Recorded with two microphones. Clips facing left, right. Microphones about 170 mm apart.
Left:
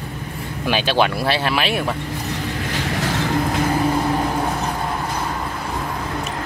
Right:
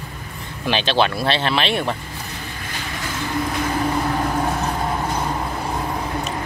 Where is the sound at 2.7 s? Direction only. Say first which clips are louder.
Left 6 dB; 80° left.